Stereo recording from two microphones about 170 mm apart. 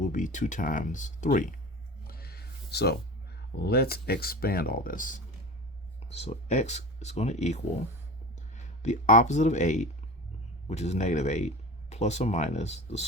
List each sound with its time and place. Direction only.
0.0 s speech: 50° left (ahead or behind)
2.0 s a sound: 65° left (ahead or behind)
3.6 s speech: 65° left (ahead or behind); by 5.2 s 50° left (ahead or behind)
6.0 s speech: 40° left (ahead or behind)